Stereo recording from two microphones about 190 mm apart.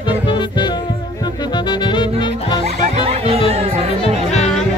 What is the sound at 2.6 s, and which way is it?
Music, 35° right (ahead or behind).